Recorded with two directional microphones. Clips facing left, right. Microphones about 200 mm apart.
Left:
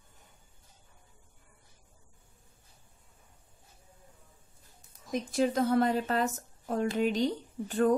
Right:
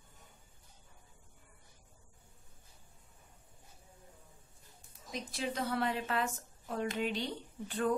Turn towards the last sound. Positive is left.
turn(degrees=45)  # may be behind; listen again after turning